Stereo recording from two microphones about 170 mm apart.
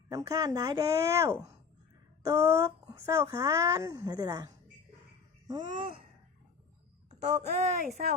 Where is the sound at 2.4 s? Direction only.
15° right (ahead or behind).